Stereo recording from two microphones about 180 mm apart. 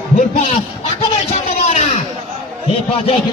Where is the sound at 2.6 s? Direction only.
35° left (ahead or behind).